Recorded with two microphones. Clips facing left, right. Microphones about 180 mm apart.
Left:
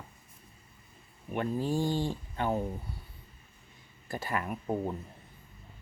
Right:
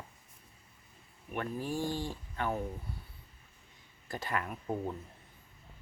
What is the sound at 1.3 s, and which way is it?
Speech, 25° left (ahead or behind).